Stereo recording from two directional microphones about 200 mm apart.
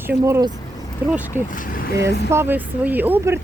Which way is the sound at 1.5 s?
40° left (ahead or behind).